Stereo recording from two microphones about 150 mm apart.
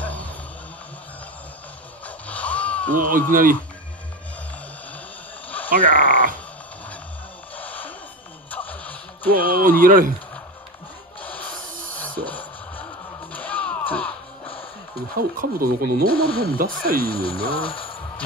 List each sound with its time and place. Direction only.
0.0 s a sound: 10° left (ahead or behind)
2.0 s a sound: 10° left (ahead or behind)
3.0 s speech: 65° right (ahead or behind)
5.9 s speech: 60° right (ahead or behind)
7.5 s gasp: 10° left (ahead or behind)
8.5 s music: 10° left (ahead or behind)
9.5 s speech: 75° right (ahead or behind)
11.1 s music: 10° left (ahead or behind)
15.1 s speech: 75° right (ahead or behind)
16.1 s speech: 35° left (ahead or behind)
16.5 s speech: 75° right (ahead or behind)
17.1 s speech: 35° left (ahead or behind)